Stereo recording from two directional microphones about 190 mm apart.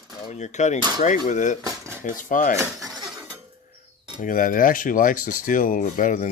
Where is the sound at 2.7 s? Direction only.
Centre (ahead or behind).